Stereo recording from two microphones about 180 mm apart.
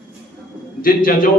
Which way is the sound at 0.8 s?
50° left (ahead or behind).